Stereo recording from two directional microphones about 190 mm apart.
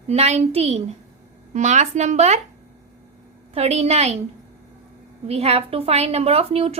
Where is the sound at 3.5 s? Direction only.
35° right (ahead or behind).